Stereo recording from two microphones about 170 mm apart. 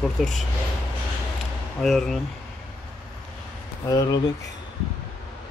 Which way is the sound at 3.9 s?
20° left (ahead or behind).